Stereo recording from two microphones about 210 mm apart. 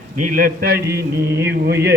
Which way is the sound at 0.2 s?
40° right (ahead or behind).